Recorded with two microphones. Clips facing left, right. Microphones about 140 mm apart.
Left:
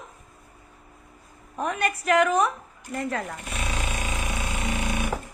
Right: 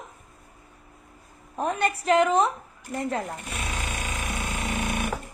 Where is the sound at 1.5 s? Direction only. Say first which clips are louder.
Right 1 dB; 35° right (ahead or behind).